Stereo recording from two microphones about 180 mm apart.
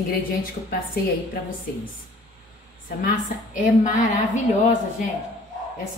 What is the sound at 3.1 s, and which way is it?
A woman's voice, 45° left (ahead or behind).